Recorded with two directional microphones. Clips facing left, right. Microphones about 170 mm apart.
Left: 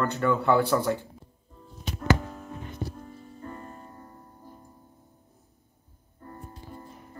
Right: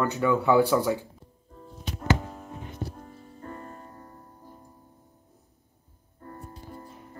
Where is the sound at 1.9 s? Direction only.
25° right (ahead or behind).